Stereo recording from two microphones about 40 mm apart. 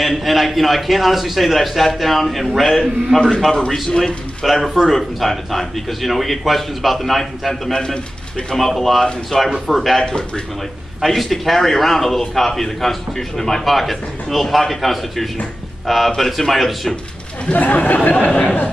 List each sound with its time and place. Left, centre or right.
0.0 s a man's voice: centre
7.7 s a man's voice: left
8.5 s speech: centre
10.0 s a man's voice: centre
11.0 s a man's voice: centre
17.5 s speech: left